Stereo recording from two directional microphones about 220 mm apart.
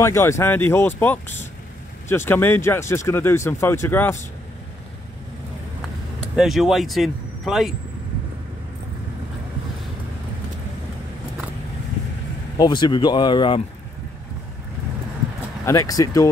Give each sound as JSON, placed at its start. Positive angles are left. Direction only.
{"t": 0.0, "sound": "speech", "side_deg": 10}
{"t": 6.3, "sound": "speech", "side_deg": 0}
{"t": 12.5, "sound": "speech", "side_deg": 20}
{"t": 15.6, "sound": "speech", "side_deg": 15}